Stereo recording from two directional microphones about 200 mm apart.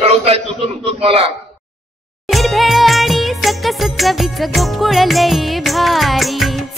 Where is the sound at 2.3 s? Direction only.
Centre (ahead or behind).